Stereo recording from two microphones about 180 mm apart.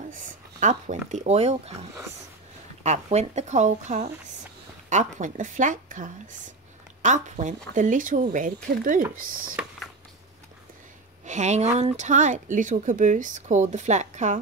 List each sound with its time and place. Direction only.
0.1 s speech: 45° right (ahead or behind)
11.2 s speech: 40° right (ahead or behind)